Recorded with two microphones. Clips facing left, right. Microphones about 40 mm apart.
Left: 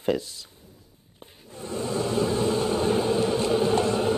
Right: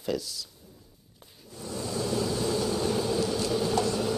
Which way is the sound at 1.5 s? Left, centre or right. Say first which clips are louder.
Left 5 dB; left.